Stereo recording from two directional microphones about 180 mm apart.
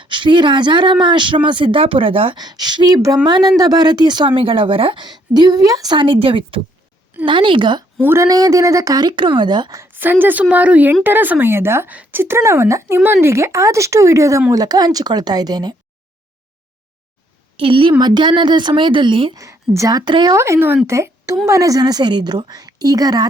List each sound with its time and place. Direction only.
0.0 s speech: 25° right (ahead or behind)
8.0 s speech: 15° right (ahead or behind)
17.6 s speech: 30° right (ahead or behind)